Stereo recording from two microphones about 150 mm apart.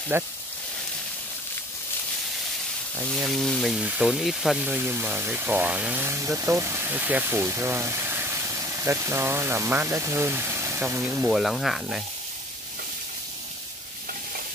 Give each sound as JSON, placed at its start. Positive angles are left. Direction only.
{"t": 0.1, "sound": "speech", "side_deg": -15}
{"t": 3.3, "sound": "speech", "side_deg": 0}
{"t": 11.3, "sound": "speech", "side_deg": 0}